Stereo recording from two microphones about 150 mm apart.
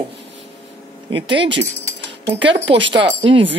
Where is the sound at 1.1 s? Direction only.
35° right (ahead or behind).